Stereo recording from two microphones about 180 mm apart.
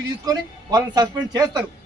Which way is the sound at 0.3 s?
20° right (ahead or behind).